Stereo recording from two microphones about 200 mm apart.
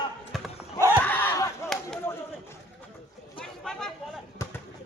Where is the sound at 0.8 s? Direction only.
10° right (ahead or behind).